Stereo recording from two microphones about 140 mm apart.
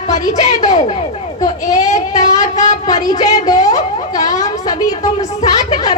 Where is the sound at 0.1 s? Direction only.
55° left (ahead or behind).